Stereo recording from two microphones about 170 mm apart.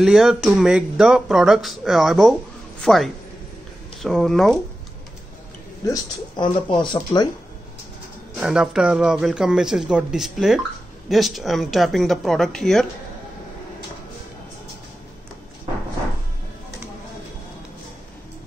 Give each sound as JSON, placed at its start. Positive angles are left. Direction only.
{"t": 0.0, "sound": "speech", "side_deg": 0}
{"t": 5.9, "sound": "speech", "side_deg": 25}
{"t": 8.4, "sound": "speech", "side_deg": -5}